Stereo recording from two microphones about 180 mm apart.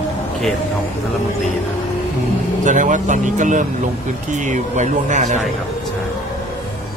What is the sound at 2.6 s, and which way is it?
Speech, 45° right (ahead or behind).